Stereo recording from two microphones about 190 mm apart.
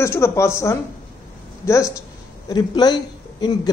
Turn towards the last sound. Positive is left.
turn(degrees=20)  # may be behind; listen again after turning